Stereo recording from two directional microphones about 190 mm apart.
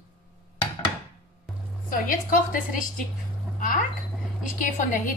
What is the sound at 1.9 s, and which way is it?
A woman's voice, 45° left (ahead or behind).